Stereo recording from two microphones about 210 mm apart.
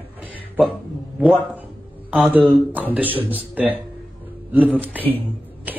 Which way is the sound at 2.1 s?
5° right (ahead or behind).